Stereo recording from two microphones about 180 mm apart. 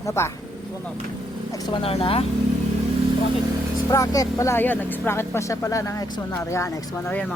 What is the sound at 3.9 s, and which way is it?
Speech, 20° left (ahead or behind).